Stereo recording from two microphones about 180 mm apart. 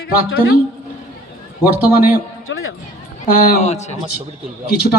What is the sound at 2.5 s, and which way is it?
Music, 90° left.